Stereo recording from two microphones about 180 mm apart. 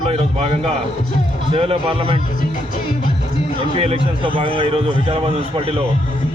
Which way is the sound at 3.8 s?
30° right (ahead or behind).